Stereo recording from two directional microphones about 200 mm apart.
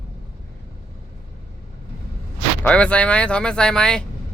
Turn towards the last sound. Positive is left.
turn(degrees=5)  # may be behind; listen again after turning